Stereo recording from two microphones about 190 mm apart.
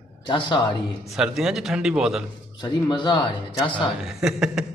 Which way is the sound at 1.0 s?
Centre (ahead or behind).